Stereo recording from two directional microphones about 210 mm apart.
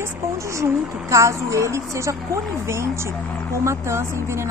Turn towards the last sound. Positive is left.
turn(degrees=-15)  # may be behind; listen again after turning